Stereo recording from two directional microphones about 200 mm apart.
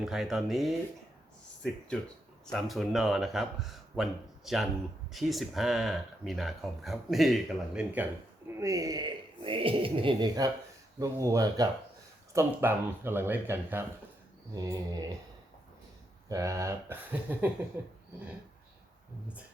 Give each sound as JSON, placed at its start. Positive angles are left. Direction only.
{"t": 0.0, "sound": "speech", "side_deg": 0}
{"t": 2.5, "sound": "speech", "side_deg": 0}
{"t": 8.4, "sound": "speech", "side_deg": -15}
{"t": 16.3, "sound": "speech", "side_deg": -15}